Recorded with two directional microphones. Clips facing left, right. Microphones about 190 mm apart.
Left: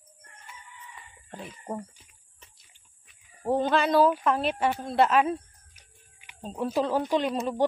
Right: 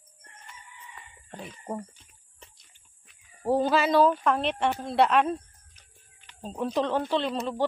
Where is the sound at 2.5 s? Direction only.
Centre (ahead or behind).